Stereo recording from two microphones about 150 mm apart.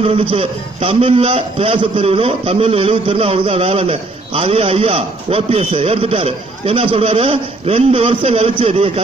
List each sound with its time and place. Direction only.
0.0 s a man's voice: 40° right (ahead or behind)